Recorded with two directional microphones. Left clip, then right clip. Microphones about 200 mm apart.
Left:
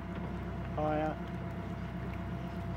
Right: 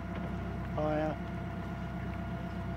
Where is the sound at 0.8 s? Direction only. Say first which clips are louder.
Even; 20° right (ahead or behind).